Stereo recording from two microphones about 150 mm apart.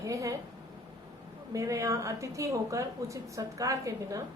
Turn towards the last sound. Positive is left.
turn(degrees=-20)  # may be behind; listen again after turning